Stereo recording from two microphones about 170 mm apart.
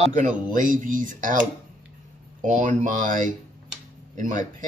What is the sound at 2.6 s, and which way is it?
Speech, 50° right (ahead or behind).